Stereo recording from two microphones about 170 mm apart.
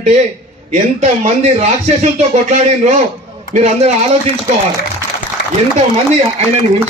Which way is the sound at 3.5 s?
40° right (ahead or behind).